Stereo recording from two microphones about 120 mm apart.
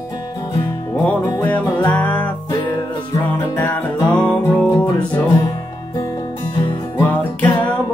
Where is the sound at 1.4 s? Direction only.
15° left (ahead or behind).